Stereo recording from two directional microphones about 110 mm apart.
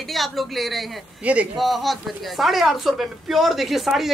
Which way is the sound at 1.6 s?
Centre (ahead or behind).